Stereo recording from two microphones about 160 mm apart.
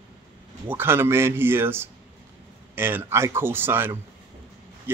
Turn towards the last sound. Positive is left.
turn(degrees=-15)  # may be behind; listen again after turning